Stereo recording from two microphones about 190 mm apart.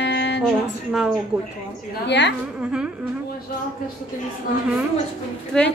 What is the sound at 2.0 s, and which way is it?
Speech, 65° left (ahead or behind).